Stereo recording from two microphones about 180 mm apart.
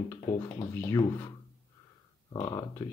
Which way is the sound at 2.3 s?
15° left (ahead or behind).